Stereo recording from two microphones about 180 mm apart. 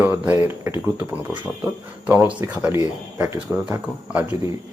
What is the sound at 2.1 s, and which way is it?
Speech, 10° right (ahead or behind).